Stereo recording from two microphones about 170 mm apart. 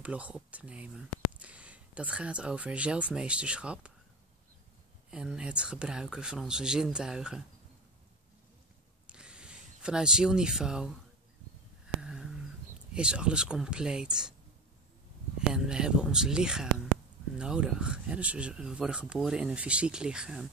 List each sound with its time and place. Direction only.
0.0 s speech: 5° right (ahead or behind)
5.1 s speech: 5° right (ahead or behind)
9.0 s a sound: 5° right (ahead or behind)
12.0 s a sound: 5° right (ahead or behind)
12.9 s speech: 5° right (ahead or behind)
15.3 s speech: 5° right (ahead or behind)